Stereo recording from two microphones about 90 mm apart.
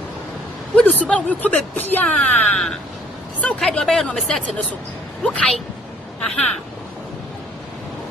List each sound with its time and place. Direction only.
0.7 s speech: 15° left (ahead or behind)